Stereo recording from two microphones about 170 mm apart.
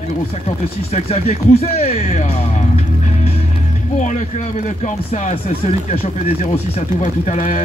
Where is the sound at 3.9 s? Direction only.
45° left (ahead or behind).